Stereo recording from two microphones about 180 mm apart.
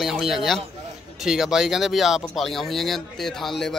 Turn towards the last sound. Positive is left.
turn(degrees=0)  # may be behind; listen again after turning